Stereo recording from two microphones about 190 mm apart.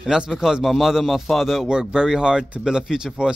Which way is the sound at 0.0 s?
5° right (ahead or behind).